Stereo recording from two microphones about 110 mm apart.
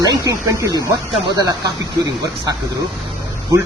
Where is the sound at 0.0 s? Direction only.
30° right (ahead or behind).